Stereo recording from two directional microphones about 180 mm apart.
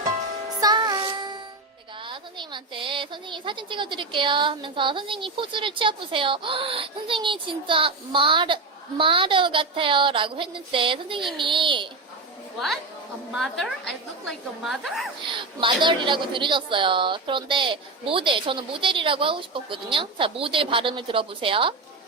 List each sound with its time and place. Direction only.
0.6 s music: 20° right (ahead or behind)
2.0 s a woman's voice: 25° right (ahead or behind)
13.3 s a woman's voice: centre (ahead or behind)
15.3 s a woman's voice: 25° right (ahead or behind)